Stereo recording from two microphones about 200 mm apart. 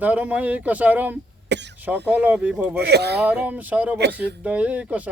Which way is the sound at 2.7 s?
55° right (ahead or behind).